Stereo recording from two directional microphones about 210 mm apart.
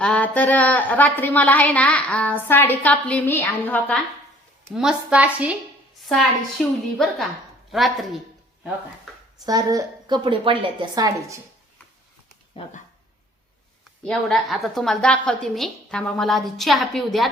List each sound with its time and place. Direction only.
0.0 s a woman's voice: 5° left (ahead or behind)
4.7 s a woman's voice: 5° right (ahead or behind)
9.5 s a woman's voice: 15° right (ahead or behind)
12.6 s speech: 25° left (ahead or behind)
14.0 s a woman's voice: centre (ahead or behind)